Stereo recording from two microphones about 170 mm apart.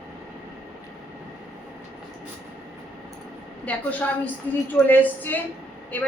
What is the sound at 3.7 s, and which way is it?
A woman's voice, 10° left (ahead or behind).